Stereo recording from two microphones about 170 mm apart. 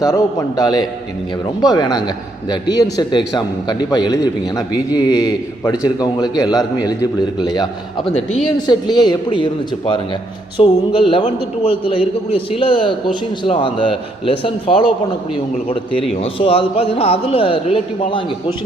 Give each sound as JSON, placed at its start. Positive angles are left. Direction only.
{"t": 0.0, "sound": "a man's voice", "side_deg": 20}
{"t": 16.1, "sound": "a man's voice", "side_deg": 35}